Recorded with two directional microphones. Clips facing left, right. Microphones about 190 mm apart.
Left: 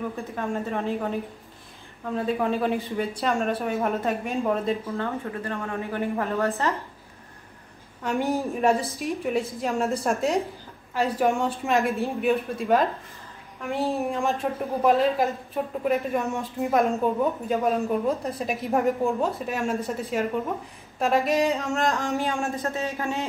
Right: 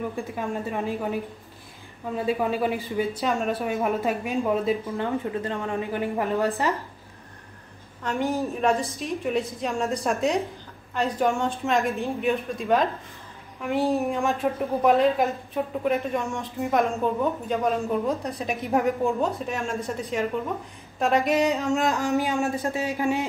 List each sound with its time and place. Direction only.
0.1 s a woman's voice: 10° right (ahead or behind)
2.1 s a woman's voice: 5° right (ahead or behind)
4.9 s a woman's voice: 20° right (ahead or behind)
8.0 s a woman's voice: 10° left (ahead or behind)
21.0 s a woman's voice: centre (ahead or behind)